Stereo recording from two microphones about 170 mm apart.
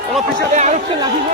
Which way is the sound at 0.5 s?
45° right (ahead or behind).